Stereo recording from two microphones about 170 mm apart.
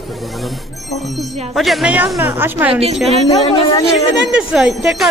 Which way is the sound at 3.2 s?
25° left (ahead or behind).